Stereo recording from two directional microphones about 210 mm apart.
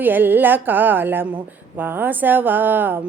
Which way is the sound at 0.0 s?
10° right (ahead or behind).